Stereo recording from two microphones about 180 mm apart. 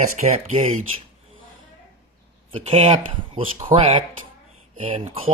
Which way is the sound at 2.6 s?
35° right (ahead or behind).